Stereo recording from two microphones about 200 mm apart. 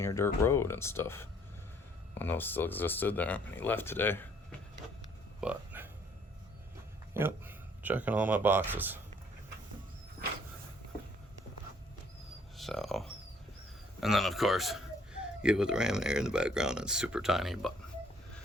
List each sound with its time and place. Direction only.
0.0 s speech: 15° left (ahead or behind)
5.4 s a sound: 10° right (ahead or behind)
7.1 s speech: 10° right (ahead or behind)
12.5 s speech: centre (ahead or behind)